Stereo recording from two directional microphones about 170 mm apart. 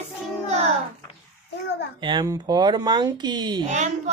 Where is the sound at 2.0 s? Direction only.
25° right (ahead or behind).